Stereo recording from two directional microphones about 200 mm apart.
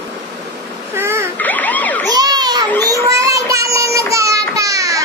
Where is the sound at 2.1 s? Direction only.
20° right (ahead or behind).